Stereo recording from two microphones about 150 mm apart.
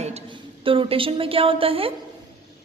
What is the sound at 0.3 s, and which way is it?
A woman's voice, 35° right (ahead or behind).